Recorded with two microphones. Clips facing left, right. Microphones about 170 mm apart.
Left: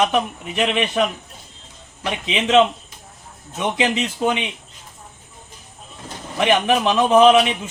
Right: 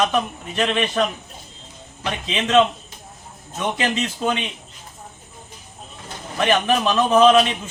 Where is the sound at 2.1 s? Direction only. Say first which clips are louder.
Left 2 dB; 15° left (ahead or behind).